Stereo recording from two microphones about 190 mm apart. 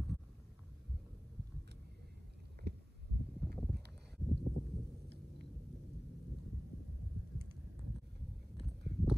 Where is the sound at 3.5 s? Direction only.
5° left (ahead or behind).